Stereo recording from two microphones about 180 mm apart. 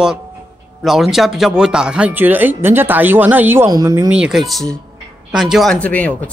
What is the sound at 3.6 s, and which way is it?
Speech, 20° right (ahead or behind).